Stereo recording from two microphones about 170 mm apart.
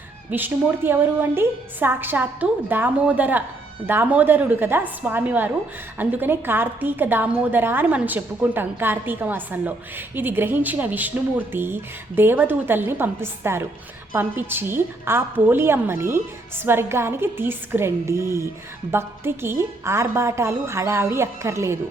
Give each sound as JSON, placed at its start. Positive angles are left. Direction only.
{"t": 0.3, "sound": "a woman's voice", "side_deg": -10}